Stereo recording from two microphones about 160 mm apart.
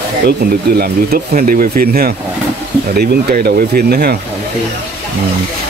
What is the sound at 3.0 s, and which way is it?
Speech, 80° right.